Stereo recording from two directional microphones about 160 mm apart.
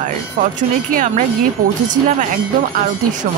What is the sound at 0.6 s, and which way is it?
Speech, 50° right (ahead or behind).